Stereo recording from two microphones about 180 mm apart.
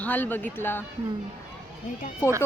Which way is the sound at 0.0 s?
10° left (ahead or behind).